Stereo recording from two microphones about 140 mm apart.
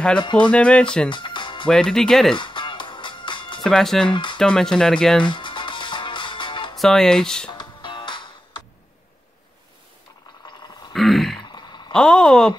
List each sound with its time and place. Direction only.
0.2 s speech: 35° left (ahead or behind)
0.5 s speech: 10° left (ahead or behind)
1.1 s music: 35° left (ahead or behind)
1.7 s speech: 5° left (ahead or behind)
2.3 s music: 35° left (ahead or behind)
3.6 s speech: 5° left (ahead or behind)
4.1 s speech: 35° left (ahead or behind)
4.4 s speech: 5° left (ahead or behind)
5.2 s music: 35° left (ahead or behind)
6.8 s speech: 5° left (ahead or behind)
7.5 s music: 35° left (ahead or behind)
10.9 s grunt: centre (ahead or behind)
11.4 s a sound: 30° left (ahead or behind)
11.9 s speech: 5° left (ahead or behind)